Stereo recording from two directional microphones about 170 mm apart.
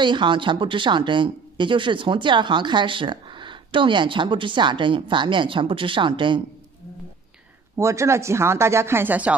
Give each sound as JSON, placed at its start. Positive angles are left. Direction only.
{"t": 0.0, "sound": "speech", "side_deg": -25}
{"t": 7.7, "sound": "speech", "side_deg": -15}